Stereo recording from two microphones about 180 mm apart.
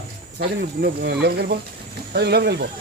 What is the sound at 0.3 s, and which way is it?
Speech, 60° right (ahead or behind).